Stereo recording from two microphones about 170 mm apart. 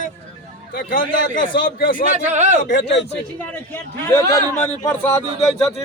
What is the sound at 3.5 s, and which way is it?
A man's voice, 10° left (ahead or behind).